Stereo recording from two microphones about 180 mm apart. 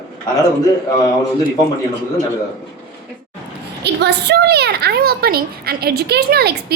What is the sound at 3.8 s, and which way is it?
A woman's voice, 65° right (ahead or behind).